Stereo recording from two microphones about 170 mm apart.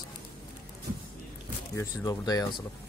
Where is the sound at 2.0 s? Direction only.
20° left (ahead or behind).